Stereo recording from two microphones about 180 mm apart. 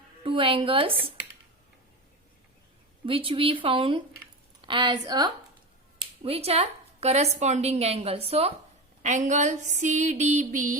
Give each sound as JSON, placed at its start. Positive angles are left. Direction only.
{"t": 0.2, "sound": "speech", "side_deg": -30}
{"t": 3.1, "sound": "speech", "side_deg": -30}
{"t": 6.0, "sound": "speech", "side_deg": -35}
{"t": 9.0, "sound": "a sound", "side_deg": -40}